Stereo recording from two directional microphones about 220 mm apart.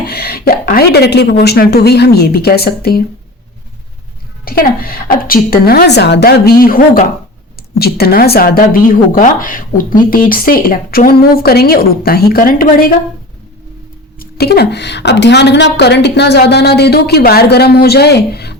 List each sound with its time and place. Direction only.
0.1 s a woman's voice: 45° left (ahead or behind)
4.4 s a woman's voice: 40° left (ahead or behind)
14.2 s a woman's voice: 45° left (ahead or behind)